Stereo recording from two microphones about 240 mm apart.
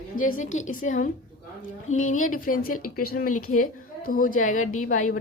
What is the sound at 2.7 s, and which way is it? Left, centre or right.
Speech, left.